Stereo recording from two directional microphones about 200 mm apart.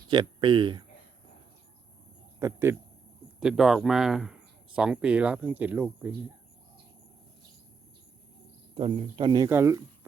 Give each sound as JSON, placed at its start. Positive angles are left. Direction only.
{"t": 0.1, "sound": "speech", "side_deg": -25}
{"t": 2.4, "sound": "speech", "side_deg": -10}
{"t": 3.4, "sound": "speech", "side_deg": 0}
{"t": 8.7, "sound": "speech", "side_deg": -30}